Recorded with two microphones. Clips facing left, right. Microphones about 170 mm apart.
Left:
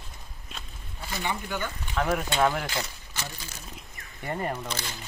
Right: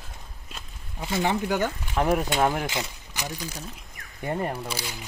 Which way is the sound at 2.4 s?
20° right (ahead or behind).